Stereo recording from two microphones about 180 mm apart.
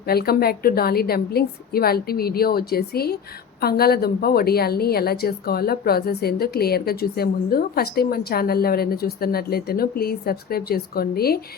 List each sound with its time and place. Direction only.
0.1 s a woman's voice: 60° left (ahead or behind)